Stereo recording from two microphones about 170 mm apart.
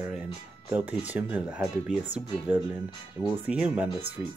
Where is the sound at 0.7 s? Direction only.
10° right (ahead or behind).